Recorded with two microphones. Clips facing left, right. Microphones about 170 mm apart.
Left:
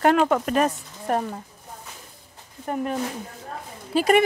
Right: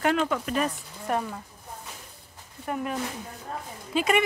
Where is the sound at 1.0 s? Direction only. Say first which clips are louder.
Left 4 dB; 40° left (ahead or behind).